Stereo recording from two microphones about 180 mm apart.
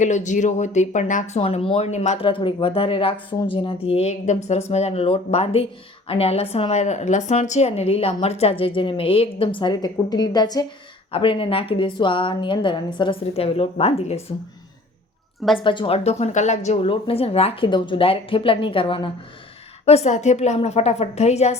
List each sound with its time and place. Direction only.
0.0 s a woman's voice: 40° left (ahead or behind)
15.4 s a woman's voice: centre (ahead or behind)
15.6 s speech: 25° left (ahead or behind)